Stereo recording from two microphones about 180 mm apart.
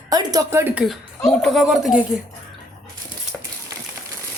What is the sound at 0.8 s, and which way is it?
A woman's voice, centre (ahead or behind).